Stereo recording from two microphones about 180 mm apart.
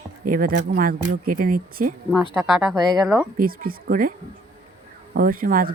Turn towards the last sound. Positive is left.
turn(degrees=-50)  # may be behind; listen again after turning